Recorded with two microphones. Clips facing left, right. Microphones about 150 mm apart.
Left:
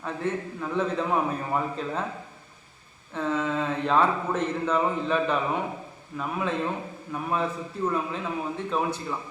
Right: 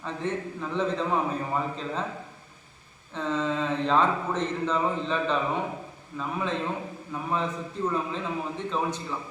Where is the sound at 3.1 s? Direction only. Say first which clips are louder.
Left 1 dB; 10° left (ahead or behind).